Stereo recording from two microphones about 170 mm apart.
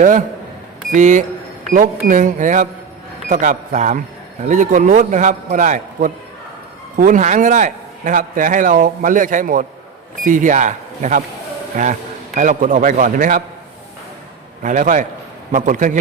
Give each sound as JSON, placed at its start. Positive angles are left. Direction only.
{"t": 0.9, "sound": "a man's voice", "side_deg": -45}
{"t": 14.6, "sound": "a man's voice", "side_deg": -50}